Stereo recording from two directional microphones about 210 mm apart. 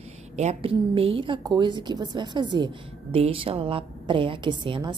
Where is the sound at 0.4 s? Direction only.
30° right (ahead or behind).